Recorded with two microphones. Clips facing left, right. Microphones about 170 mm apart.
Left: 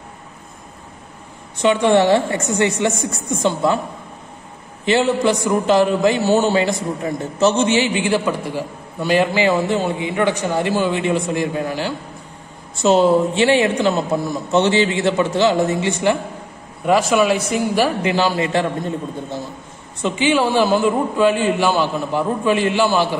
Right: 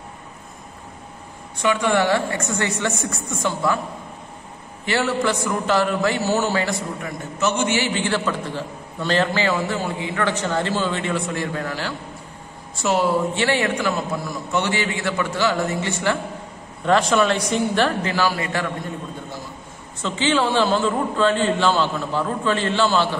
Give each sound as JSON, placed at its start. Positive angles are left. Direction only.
{"t": 1.6, "sound": "a man's voice", "side_deg": 25}
{"t": 4.8, "sound": "a man's voice", "side_deg": 20}
{"t": 18.1, "sound": "a man's voice", "side_deg": 20}
{"t": 20.0, "sound": "a man's voice", "side_deg": 15}